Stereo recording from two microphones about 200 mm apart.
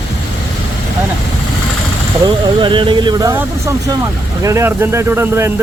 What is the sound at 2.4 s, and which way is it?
Speech, 25° right (ahead or behind).